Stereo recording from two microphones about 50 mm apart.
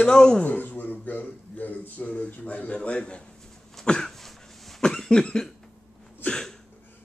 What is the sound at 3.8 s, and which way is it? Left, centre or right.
Cough, centre.